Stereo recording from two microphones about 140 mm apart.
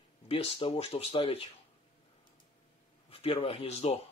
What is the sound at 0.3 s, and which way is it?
Speech, 45° left (ahead or behind).